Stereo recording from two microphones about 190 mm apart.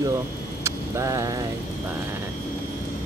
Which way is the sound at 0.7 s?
15° right (ahead or behind).